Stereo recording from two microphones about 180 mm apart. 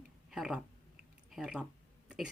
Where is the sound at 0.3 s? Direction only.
5° right (ahead or behind).